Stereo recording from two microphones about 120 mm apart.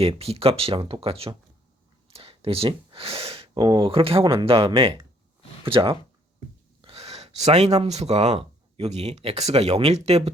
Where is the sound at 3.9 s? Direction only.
50° right (ahead or behind).